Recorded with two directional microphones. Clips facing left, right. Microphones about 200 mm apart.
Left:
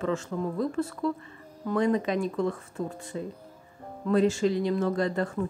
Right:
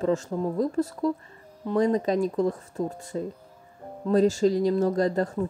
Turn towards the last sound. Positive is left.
turn(degrees=-40)  # may be behind; listen again after turning